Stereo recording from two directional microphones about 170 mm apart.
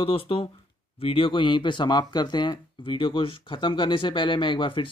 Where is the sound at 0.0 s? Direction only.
35° left (ahead or behind).